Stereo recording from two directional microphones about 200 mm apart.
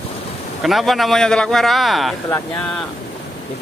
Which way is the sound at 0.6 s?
Centre (ahead or behind).